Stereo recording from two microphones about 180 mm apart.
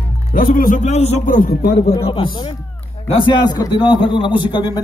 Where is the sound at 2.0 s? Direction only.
30° left (ahead or behind).